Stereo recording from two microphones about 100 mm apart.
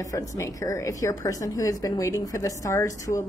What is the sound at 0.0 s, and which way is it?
Speech, 35° left (ahead or behind).